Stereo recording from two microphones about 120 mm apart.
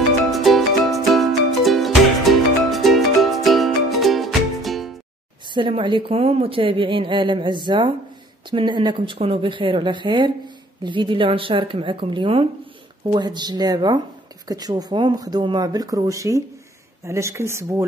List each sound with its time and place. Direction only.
0.3 s music: centre (ahead or behind)
5.5 s speech: 45° right (ahead or behind); by 17.8 s 25° right (ahead or behind)